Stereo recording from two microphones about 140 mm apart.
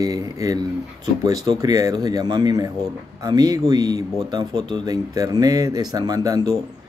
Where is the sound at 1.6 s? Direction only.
25° right (ahead or behind).